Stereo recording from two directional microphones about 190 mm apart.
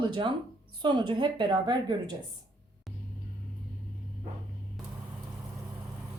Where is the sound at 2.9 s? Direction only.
Centre (ahead or behind).